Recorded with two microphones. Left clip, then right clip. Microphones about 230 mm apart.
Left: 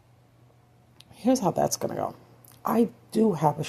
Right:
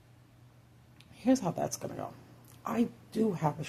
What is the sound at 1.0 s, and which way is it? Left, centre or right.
Speech, left.